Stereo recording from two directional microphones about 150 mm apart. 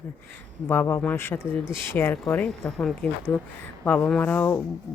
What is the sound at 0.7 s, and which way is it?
Speech, 15° left (ahead or behind).